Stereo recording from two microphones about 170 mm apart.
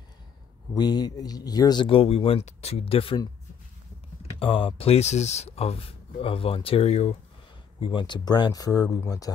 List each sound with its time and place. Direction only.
0.7 s speech: 25° left (ahead or behind)
4.4 s speech: 35° left (ahead or behind)
7.8 s speech: 30° left (ahead or behind)